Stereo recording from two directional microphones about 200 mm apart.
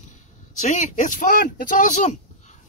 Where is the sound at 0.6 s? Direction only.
35° left (ahead or behind).